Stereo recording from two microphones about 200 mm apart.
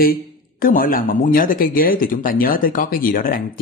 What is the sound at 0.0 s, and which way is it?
Speech, 45° left (ahead or behind).